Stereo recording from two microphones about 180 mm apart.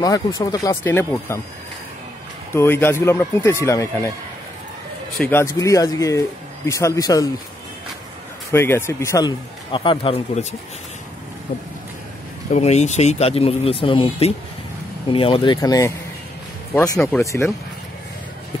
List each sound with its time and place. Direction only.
0.0 s speech: 20° left (ahead or behind)
2.5 s speech: 15° left (ahead or behind)
5.2 s speech: 15° left (ahead or behind)
8.5 s speech: 15° left (ahead or behind)
9.7 s speech: 30° left (ahead or behind)
12.5 s speech: 40° left (ahead or behind); by 15.9 s 20° left (ahead or behind)
17.2 s speech: 15° left (ahead or behind)